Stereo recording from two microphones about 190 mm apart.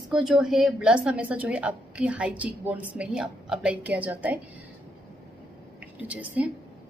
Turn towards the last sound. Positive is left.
turn(degrees=-5)  # may be behind; listen again after turning